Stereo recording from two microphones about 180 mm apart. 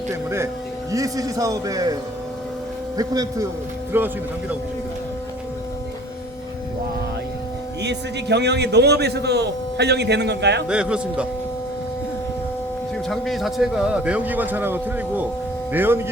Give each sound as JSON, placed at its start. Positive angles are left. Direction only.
{"t": 0.1, "sound": "a man's voice", "side_deg": -15}
{"t": 3.0, "sound": "a man's voice", "side_deg": -20}
{"t": 7.8, "sound": "a man's voice", "side_deg": -70}
{"t": 10.7, "sound": "a man's voice", "side_deg": -5}
{"t": 13.1, "sound": "a man's voice", "side_deg": 0}